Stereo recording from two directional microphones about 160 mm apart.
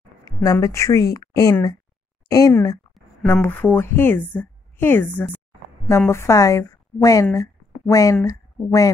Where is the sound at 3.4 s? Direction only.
15° left (ahead or behind).